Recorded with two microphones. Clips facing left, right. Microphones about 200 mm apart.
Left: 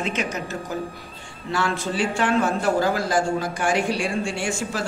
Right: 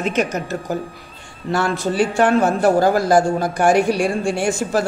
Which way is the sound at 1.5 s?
45° right (ahead or behind).